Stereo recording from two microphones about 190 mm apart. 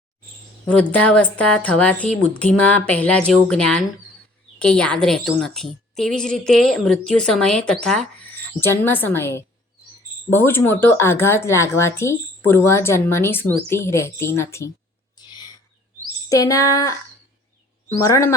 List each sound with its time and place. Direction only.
0.7 s a woman's voice: 5° left (ahead or behind)
15.3 s bird: 20° left (ahead or behind)
16.3 s speech: 20° left (ahead or behind)